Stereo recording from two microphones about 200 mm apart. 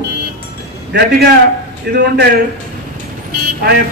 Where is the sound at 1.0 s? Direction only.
50° right (ahead or behind).